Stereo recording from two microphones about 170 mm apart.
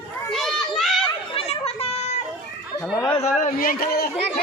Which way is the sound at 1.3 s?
35° left (ahead or behind).